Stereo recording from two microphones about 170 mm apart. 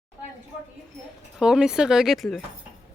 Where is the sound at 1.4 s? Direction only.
5° right (ahead or behind).